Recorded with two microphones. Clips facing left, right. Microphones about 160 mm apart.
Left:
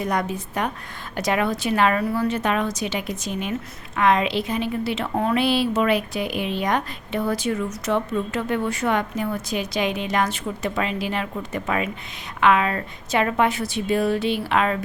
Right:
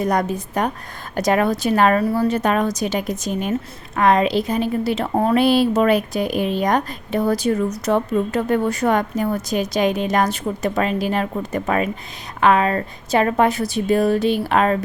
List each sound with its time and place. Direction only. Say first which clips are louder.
0.0 s a woman's voice: right 4 dB; 40° right (ahead or behind)